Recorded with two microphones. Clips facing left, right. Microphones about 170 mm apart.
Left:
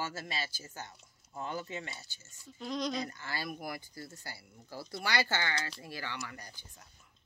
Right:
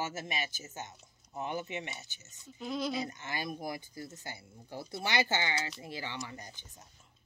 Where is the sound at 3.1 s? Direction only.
20° right (ahead or behind).